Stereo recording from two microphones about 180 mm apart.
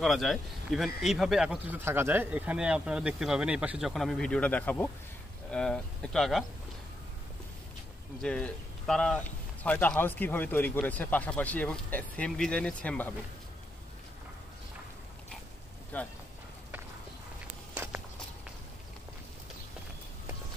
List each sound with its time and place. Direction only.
0.0 s speech: centre (ahead or behind)
8.2 s speech: 5° left (ahead or behind)
15.9 s speech: 10° left (ahead or behind)